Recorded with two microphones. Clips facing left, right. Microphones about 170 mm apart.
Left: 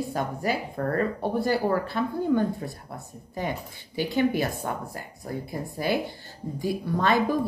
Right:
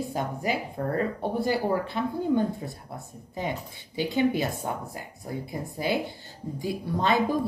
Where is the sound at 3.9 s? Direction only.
20° right (ahead or behind).